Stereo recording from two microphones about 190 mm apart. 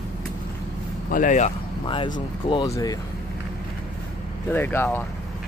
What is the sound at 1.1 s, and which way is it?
Speech, 40° left (ahead or behind).